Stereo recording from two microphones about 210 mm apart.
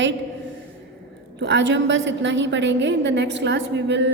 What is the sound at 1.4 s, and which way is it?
A woman's voice, 60° right (ahead or behind).